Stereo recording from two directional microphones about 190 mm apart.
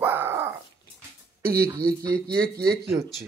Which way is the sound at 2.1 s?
55° right (ahead or behind).